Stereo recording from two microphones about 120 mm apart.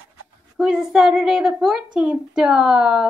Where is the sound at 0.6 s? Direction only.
5° right (ahead or behind).